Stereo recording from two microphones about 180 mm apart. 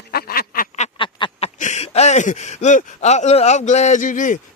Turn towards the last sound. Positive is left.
turn(degrees=45)  # may be behind; listen again after turning